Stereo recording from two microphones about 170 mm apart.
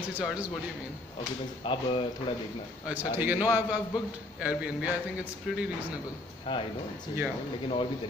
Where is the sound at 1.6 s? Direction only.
30° left (ahead or behind).